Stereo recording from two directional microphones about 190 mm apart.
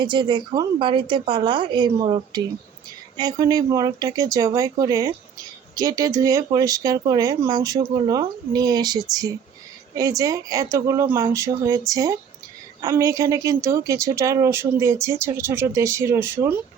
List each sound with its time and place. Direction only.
0.0 s speech: 25° right (ahead or behind)